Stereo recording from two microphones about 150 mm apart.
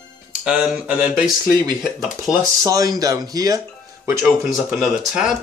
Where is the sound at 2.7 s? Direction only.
25° right (ahead or behind).